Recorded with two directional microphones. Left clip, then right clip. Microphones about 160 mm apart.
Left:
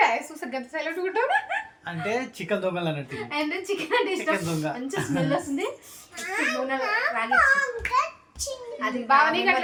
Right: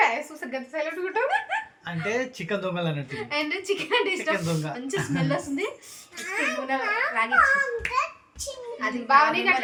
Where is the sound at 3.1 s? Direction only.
15° right (ahead or behind).